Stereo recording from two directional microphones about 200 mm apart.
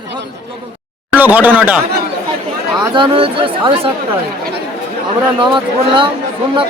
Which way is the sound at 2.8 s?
25° right (ahead or behind).